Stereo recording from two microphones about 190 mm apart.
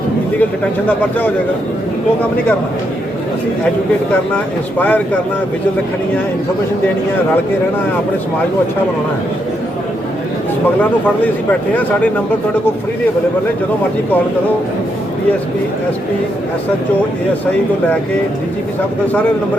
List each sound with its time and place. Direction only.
0.3 s a man's voice: 10° left (ahead or behind)
4.8 s a man's voice: 10° left (ahead or behind)
11.7 s a man's voice: 10° left (ahead or behind)